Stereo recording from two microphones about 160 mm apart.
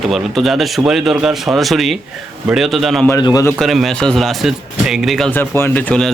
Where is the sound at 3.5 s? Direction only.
Centre (ahead or behind).